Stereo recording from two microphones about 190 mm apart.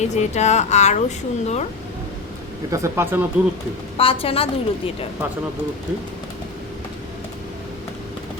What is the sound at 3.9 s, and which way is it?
Speech, 30° left (ahead or behind).